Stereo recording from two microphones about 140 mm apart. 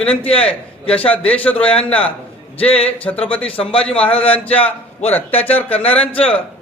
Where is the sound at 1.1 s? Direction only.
10° left (ahead or behind).